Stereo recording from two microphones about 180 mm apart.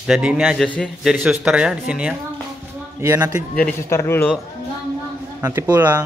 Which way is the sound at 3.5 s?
10° left (ahead or behind).